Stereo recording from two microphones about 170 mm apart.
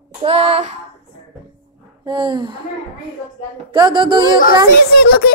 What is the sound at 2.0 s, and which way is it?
Speech, 25° right (ahead or behind).